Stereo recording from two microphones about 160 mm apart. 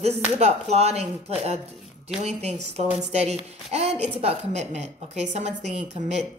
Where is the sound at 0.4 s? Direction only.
40° right (ahead or behind).